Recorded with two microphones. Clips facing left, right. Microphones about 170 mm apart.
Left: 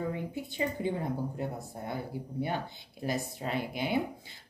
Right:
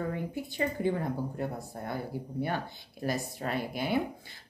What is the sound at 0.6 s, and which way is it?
A woman's voice, 15° left (ahead or behind).